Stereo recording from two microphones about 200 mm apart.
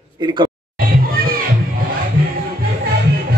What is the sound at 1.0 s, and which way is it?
Music, 45° right (ahead or behind).